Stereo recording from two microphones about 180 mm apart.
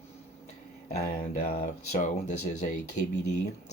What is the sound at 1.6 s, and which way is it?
Speech, 40° left (ahead or behind).